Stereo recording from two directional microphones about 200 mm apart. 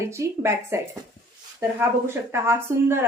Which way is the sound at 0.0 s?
15° right (ahead or behind).